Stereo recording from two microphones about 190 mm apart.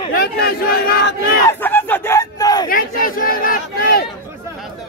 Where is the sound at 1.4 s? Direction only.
10° left (ahead or behind).